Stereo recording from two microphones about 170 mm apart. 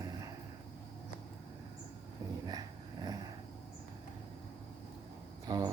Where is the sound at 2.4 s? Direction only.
25° right (ahead or behind).